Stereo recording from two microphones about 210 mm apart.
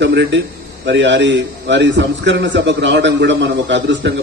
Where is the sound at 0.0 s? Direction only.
55° right (ahead or behind).